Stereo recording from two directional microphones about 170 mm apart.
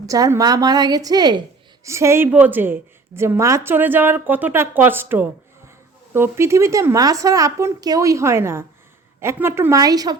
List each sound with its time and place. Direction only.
0.0 s a woman's voice: 20° right (ahead or behind)